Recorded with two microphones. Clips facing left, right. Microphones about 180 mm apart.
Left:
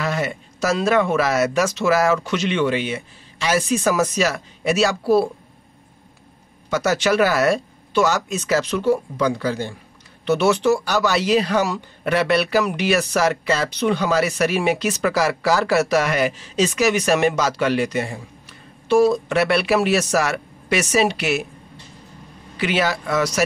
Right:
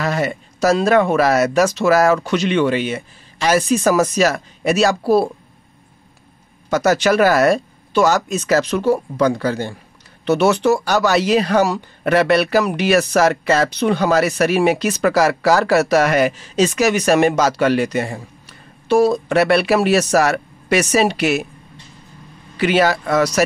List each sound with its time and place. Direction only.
0.0 s a sound: 40° right (ahead or behind)
1.1 s speech: 40° right (ahead or behind)
6.7 s speech: 45° right (ahead or behind)
11.6 s speech: 40° right (ahead or behind)
13.1 s speech: 60° right (ahead or behind)
13.7 s speech: 45° right (ahead or behind)
22.6 s speech: 45° right (ahead or behind)